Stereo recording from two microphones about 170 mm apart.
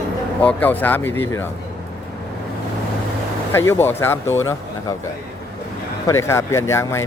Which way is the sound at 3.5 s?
15° left (ahead or behind).